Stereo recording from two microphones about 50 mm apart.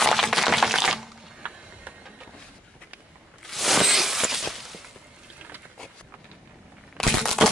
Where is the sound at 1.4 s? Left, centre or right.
Right.